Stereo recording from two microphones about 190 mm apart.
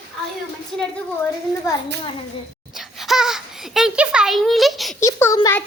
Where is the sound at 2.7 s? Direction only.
Centre (ahead or behind).